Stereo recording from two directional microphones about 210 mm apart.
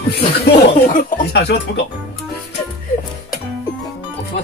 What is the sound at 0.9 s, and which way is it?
Speech, 40° left (ahead or behind).